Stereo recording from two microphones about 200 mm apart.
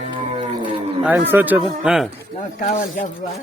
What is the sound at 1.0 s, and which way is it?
A woman's voice, 10° right (ahead or behind).